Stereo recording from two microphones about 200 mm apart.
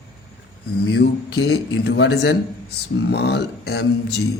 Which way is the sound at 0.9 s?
55° left (ahead or behind).